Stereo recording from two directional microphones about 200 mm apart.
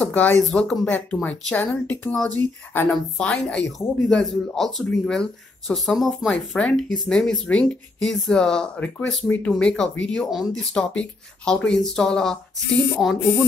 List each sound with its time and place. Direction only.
0.0 s speech: 10° left (ahead or behind)